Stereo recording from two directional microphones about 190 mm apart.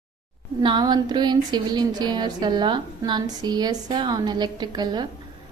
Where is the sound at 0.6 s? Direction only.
20° right (ahead or behind).